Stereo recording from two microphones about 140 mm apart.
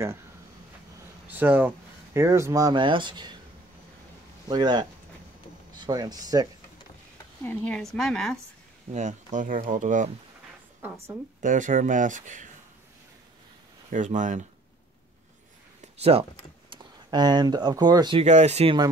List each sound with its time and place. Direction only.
1.2 s speech: 10° right (ahead or behind); by 3.3 s 35° right (ahead or behind)
4.5 s speech: 30° right (ahead or behind)
7.4 s speech: 10° left (ahead or behind)
8.9 s speech: 60° right (ahead or behind)
10.8 s a woman's voice: 15° right (ahead or behind)
11.4 s speech: 70° right (ahead or behind)
13.8 s speech: 65° right (ahead or behind)
15.8 s a sound: 45° right (ahead or behind)
16.7 s speech: 30° right (ahead or behind)
18.2 s speech: 50° right (ahead or behind)